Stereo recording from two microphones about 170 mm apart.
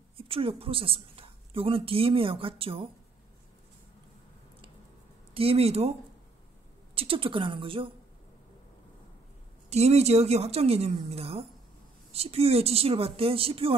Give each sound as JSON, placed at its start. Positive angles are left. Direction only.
{"t": 0.2, "sound": "a woman's voice", "side_deg": -35}
{"t": 5.3, "sound": "a woman's voice", "side_deg": -35}
{"t": 7.0, "sound": "a woman's voice", "side_deg": -30}
{"t": 9.7, "sound": "a woman's voice", "side_deg": -40}